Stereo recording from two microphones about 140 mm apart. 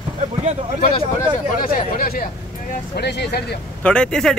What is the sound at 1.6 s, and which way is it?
Speech, 85° left.